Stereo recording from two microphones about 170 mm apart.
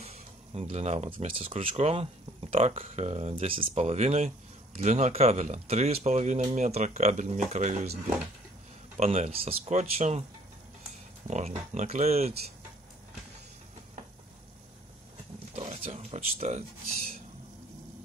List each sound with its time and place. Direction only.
0.0 s speech: 40° right (ahead or behind)
8.9 s speech: 40° right (ahead or behind)
11.2 s speech: 45° right (ahead or behind)
15.5 s a sound: 35° right (ahead or behind)